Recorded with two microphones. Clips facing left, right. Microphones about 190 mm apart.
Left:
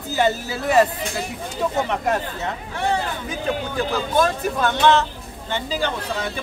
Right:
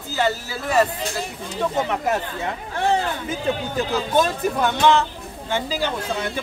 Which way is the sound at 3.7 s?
20° right (ahead or behind).